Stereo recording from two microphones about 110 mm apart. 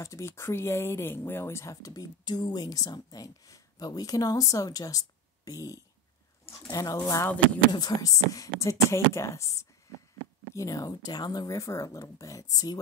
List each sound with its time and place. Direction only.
0.0 s speech: 25° left (ahead or behind)